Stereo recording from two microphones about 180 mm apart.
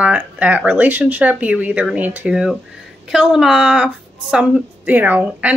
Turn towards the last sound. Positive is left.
turn(degrees=-10)  # may be behind; listen again after turning